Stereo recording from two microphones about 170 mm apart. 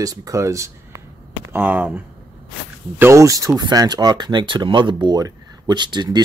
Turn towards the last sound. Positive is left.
turn(degrees=-25)  # may be behind; listen again after turning